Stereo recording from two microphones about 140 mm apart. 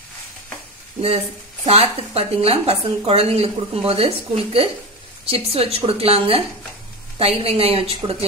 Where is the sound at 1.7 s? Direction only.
45° right (ahead or behind).